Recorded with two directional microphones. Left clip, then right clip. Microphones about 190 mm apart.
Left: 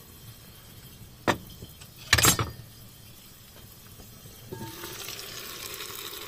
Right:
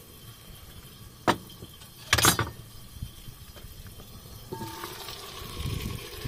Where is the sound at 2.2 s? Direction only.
15° right (ahead or behind).